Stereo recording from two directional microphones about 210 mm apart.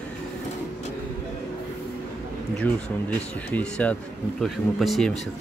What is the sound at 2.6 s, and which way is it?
A man's voice, 5° left (ahead or behind).